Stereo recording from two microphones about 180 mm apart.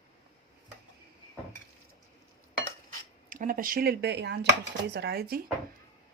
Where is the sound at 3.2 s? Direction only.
50° right (ahead or behind).